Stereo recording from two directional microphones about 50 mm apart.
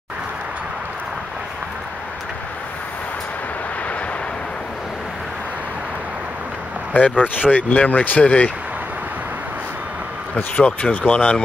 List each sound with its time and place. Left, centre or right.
6.9 s speech: left
10.3 s speech: left